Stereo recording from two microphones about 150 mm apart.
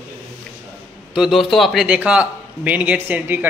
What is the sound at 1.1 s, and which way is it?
A man's voice, centre (ahead or behind).